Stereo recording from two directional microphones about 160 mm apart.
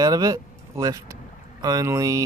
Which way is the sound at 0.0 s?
20° right (ahead or behind).